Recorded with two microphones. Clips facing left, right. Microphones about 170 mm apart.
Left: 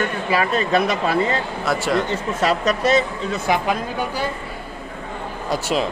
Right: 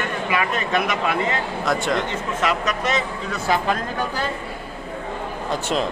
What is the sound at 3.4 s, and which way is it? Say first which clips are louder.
Speech: even; 15° left (ahead or behind).